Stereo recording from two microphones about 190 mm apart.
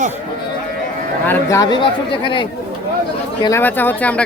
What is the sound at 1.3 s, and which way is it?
Speech, 15° left (ahead or behind).